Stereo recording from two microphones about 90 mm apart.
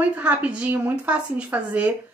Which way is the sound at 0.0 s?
15° right (ahead or behind).